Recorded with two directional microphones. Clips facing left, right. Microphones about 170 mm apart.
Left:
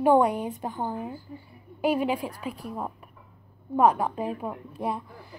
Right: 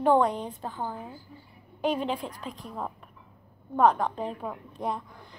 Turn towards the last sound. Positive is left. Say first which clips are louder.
# left 2 dB
turn(degrees=5)  # may be behind; listen again after turning